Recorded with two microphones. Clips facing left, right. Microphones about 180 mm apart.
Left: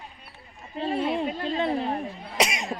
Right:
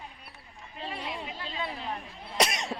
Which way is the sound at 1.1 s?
50° left (ahead or behind).